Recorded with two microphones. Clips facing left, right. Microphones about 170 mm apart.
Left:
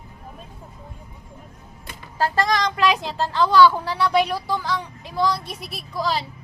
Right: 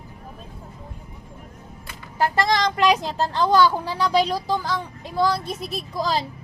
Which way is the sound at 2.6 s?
35° right (ahead or behind).